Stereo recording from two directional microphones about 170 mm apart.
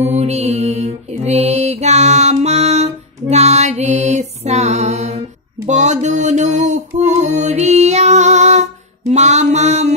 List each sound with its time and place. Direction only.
0.0 s mantra: 40° right (ahead or behind)
5.7 s music: 45° right (ahead or behind)
9.1 s a sound: 40° right (ahead or behind)